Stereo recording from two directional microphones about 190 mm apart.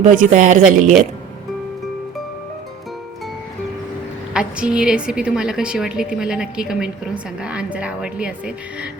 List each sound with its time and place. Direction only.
0.0 s a woman's voice: 40° right (ahead or behind)
4.4 s a woman's voice: 5° right (ahead or behind)